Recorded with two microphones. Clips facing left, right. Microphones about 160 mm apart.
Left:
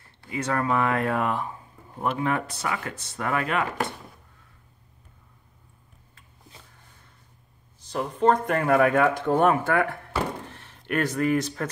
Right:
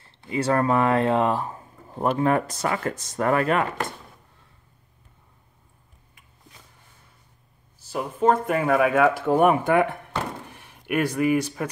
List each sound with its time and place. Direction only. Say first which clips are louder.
0.0 s a sound: right 5 dB; 25° right (ahead or behind)
0.5 s speech: right 4 dB; 35° right (ahead or behind)
7.8 s speech: even; 5° right (ahead or behind)